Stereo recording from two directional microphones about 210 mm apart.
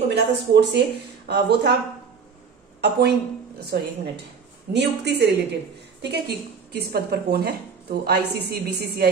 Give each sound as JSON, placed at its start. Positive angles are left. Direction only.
{"t": 0.1, "sound": "speech", "side_deg": -50}
{"t": 2.8, "sound": "a woman's voice", "side_deg": -50}